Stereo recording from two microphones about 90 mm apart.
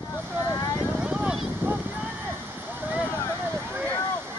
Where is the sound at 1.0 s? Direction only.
10° right (ahead or behind).